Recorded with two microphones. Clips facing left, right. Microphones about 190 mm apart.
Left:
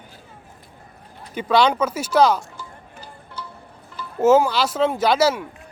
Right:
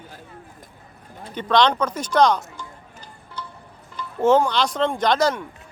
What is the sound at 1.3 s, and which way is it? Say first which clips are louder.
Music: left 1 dB; 10° left (ahead or behind).